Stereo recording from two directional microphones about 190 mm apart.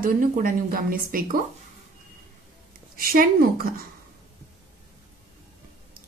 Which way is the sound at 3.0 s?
50° right (ahead or behind).